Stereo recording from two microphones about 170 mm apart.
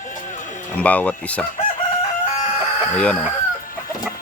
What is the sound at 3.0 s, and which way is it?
Speech, 5° left (ahead or behind).